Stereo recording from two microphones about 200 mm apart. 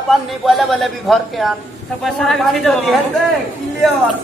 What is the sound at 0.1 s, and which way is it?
A man's voice, centre (ahead or behind).